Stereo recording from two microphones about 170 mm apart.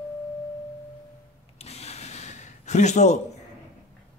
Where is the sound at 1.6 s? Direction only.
40° left (ahead or behind).